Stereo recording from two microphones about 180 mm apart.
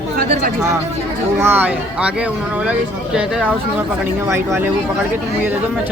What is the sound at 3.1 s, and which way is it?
Speech, 10° right (ahead or behind).